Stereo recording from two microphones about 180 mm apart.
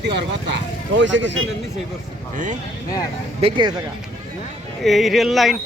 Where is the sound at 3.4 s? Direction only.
25° right (ahead or behind).